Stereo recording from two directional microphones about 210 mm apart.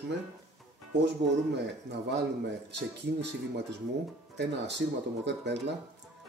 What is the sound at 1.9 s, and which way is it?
Speech, 55° right (ahead or behind).